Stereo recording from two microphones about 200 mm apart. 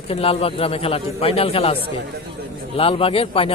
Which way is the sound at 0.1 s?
30° left (ahead or behind).